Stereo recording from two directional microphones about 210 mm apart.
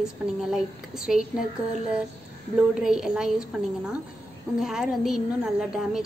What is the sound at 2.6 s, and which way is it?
A woman's voice, 5° right (ahead or behind).